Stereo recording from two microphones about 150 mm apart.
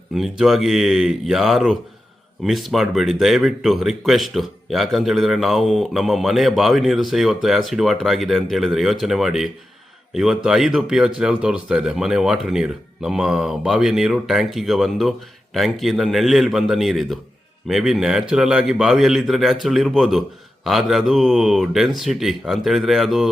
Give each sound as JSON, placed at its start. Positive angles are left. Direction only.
{"t": 0.1, "sound": "speech", "side_deg": 0}